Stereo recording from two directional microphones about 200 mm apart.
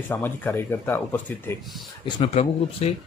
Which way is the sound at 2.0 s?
25° left (ahead or behind).